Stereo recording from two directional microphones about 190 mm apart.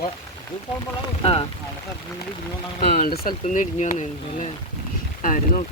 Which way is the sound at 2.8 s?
55° left (ahead or behind).